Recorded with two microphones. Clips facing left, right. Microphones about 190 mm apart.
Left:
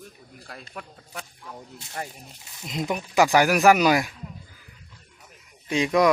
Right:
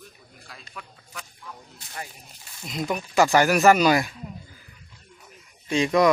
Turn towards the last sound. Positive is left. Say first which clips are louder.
# right 1 dB
turn(degrees=10)  # may be behind; listen again after turning